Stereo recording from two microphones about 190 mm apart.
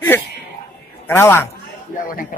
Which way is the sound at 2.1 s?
50° left (ahead or behind).